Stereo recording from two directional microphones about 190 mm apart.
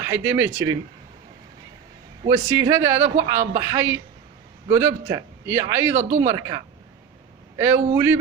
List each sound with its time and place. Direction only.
0.0 s a man's voice: 10° right (ahead or behind)
2.2 s a man's voice: 15° right (ahead or behind)